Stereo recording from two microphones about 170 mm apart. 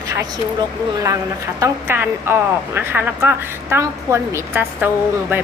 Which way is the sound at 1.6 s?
15° right (ahead or behind).